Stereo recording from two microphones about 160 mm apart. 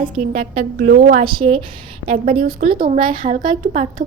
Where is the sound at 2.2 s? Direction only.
60° right (ahead or behind).